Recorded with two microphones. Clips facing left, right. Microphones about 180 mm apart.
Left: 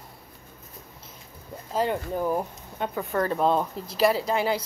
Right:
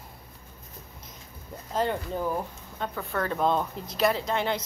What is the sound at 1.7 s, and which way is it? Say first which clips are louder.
Speech: left 2 dB; 10° left (ahead or behind).